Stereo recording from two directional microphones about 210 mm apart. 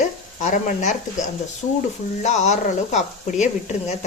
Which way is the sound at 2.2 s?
35° left (ahead or behind).